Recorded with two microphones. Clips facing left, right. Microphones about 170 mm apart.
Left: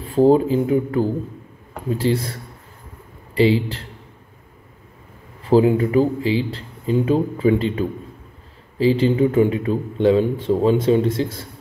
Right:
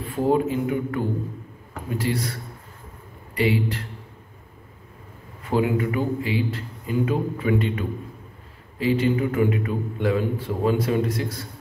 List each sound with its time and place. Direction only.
0.0 s a man's voice: 30° left (ahead or behind)
3.3 s a man's voice: 30° left (ahead or behind)
5.4 s a man's voice: 30° left (ahead or behind)